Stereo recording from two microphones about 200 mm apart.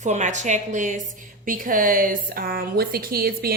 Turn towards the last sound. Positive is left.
turn(degrees=-50)  # may be behind; listen again after turning